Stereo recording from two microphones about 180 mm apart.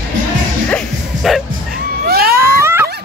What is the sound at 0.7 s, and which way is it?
Music, 5° left (ahead or behind).